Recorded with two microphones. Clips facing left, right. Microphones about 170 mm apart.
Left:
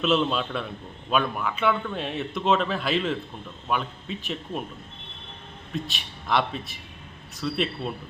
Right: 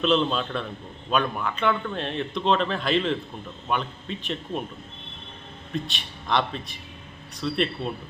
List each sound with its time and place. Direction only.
0.0 s a man's voice: 5° left (ahead or behind)
5.7 s a man's voice: centre (ahead or behind)